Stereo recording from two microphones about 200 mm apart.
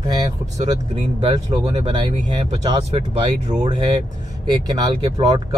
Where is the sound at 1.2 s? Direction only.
20° right (ahead or behind).